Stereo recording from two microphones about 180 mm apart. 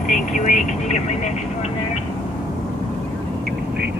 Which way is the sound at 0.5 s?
40° left (ahead or behind).